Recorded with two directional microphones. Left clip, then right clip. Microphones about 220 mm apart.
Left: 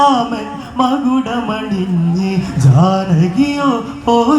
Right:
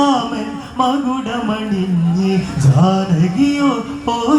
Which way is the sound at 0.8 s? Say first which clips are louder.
Left 2 dB; 30° left (ahead or behind).